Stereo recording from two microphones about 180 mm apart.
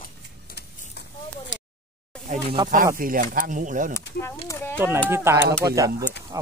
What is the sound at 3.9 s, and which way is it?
Speech, 15° left (ahead or behind).